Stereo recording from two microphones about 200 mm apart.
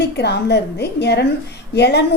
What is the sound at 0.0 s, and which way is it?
Speech, 55° left (ahead or behind).